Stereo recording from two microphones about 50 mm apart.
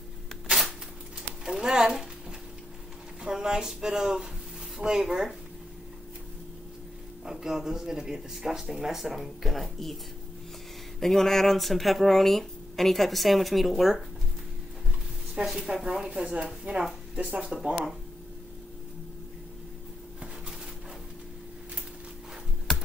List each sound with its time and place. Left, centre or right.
0.5 s a sound: centre
1.4 s speech: centre
3.3 s speech: centre
7.2 s speech: centre
11.0 s speech: centre
15.3 s speech: centre; by 17.5 s right
17.5 s speech: centre